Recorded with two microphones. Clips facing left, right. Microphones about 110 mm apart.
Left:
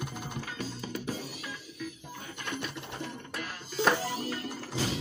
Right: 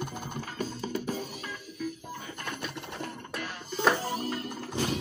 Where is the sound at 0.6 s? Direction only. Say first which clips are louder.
Right 7 dB; 50° right (ahead or behind).